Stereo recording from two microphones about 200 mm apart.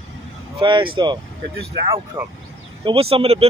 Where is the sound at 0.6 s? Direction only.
25° right (ahead or behind).